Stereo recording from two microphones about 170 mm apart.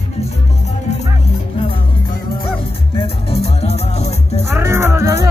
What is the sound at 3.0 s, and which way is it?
Music, 35° left (ahead or behind).